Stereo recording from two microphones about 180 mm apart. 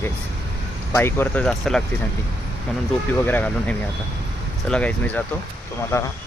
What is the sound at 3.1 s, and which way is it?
Speech, 10° left (ahead or behind).